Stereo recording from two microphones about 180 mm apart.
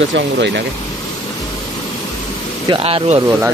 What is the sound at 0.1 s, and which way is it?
Speech, 75° right (ahead or behind).